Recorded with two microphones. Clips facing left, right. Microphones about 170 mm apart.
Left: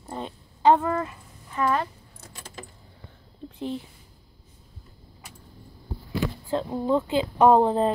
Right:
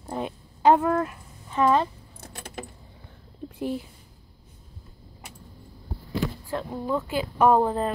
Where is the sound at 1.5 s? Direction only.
20° right (ahead or behind).